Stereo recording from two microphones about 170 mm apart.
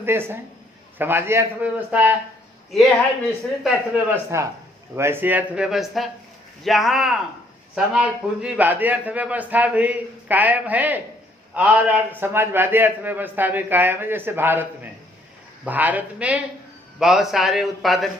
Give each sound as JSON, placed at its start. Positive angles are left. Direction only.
{"t": 0.0, "sound": "a man's voice", "side_deg": -15}
{"t": 3.6, "sound": "a man's voice", "side_deg": -10}